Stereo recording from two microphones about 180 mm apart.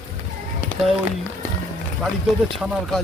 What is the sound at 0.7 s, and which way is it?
Run, 10° left (ahead or behind).